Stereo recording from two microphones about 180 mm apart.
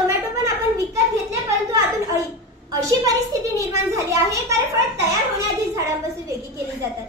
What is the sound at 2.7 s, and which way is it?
A child's voice, 20° right (ahead or behind).